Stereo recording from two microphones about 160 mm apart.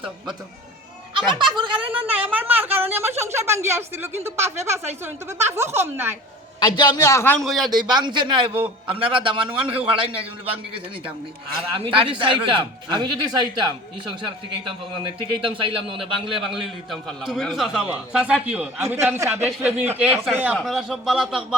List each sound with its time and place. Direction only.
1.1 s a man's voice: 30° right (ahead or behind)
1.9 s speech: 10° right (ahead or behind)
6.6 s a man's voice: 25° left (ahead or behind)
7.4 s a man's voice: centre (ahead or behind)
7.7 s a man's voice: 25° right (ahead or behind)
14.9 s a man's voice: 35° right (ahead or behind)
16.0 s a man's voice: centre (ahead or behind)